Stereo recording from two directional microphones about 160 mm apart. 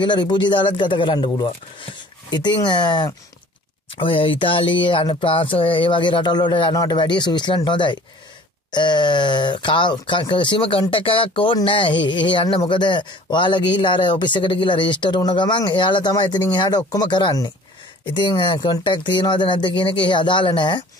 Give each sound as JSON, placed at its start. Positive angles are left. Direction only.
{"t": 0.0, "sound": "speech", "side_deg": 30}